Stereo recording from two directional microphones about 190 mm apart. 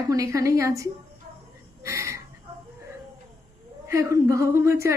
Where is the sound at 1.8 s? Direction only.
15° right (ahead or behind).